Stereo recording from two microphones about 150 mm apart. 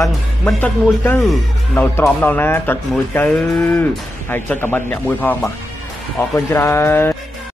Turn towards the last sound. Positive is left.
turn(degrees=15)  # may be behind; listen again after turning